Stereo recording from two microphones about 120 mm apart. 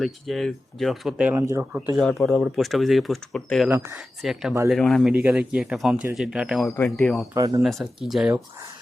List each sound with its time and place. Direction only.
0.0 s speech: centre (ahead or behind)
1.4 s speech: 25° right (ahead or behind)
2.0 s speech: centre (ahead or behind)
5.1 s speech: 10° right (ahead or behind)
7.3 s speech: 30° right (ahead or behind)
7.6 s speech: centre (ahead or behind)